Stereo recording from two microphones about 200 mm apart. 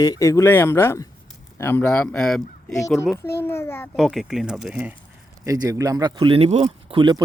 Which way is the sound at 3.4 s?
10° left (ahead or behind).